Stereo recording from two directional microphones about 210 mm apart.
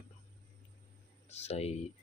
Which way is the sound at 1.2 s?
30° left (ahead or behind).